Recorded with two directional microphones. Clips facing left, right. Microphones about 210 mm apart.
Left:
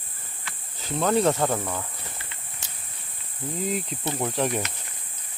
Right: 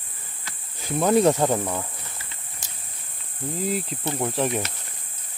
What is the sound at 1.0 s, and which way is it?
Speech, 10° right (ahead or behind).